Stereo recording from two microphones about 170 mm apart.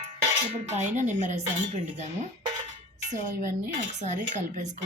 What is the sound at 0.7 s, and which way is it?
Dishes, 45° right (ahead or behind).